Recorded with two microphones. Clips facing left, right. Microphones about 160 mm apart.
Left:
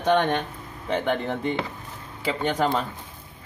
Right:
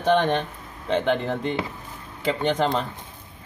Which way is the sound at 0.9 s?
10° left (ahead or behind).